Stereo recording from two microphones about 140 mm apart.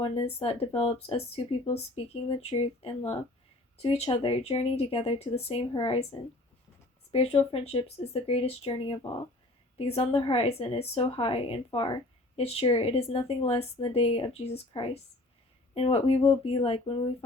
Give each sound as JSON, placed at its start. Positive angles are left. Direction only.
{"t": 0.0, "sound": "speech", "side_deg": 45}